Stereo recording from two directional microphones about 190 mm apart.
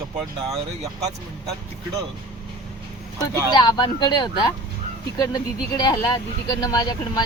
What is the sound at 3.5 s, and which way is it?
Speech, 20° left (ahead or behind).